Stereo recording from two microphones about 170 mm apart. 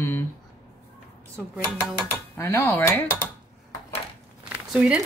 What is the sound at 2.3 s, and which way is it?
Speech, 15° left (ahead or behind).